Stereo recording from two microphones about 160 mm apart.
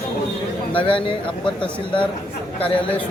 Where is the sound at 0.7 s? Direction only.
35° left (ahead or behind).